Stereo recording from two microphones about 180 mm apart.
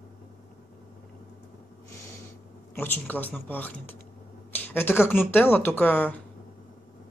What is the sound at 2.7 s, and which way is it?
Speech, 10° left (ahead or behind).